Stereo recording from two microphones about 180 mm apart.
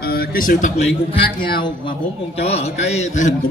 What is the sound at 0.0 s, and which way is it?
Speech, 55° left (ahead or behind).